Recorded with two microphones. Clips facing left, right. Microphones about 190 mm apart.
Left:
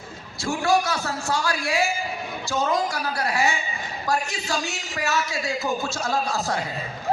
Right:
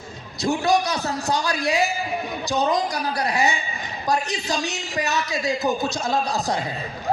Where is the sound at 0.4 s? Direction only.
20° right (ahead or behind).